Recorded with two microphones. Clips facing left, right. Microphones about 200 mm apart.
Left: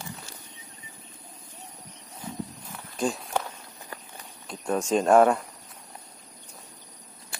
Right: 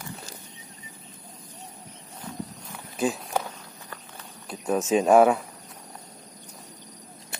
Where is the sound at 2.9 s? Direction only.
5° right (ahead or behind).